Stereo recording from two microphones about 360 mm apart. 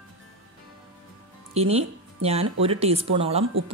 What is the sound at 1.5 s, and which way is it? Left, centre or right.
Speech, centre.